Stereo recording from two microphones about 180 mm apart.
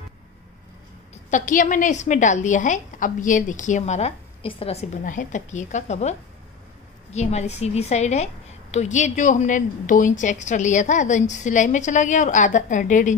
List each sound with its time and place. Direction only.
1.3 s a woman's voice: 45° left (ahead or behind)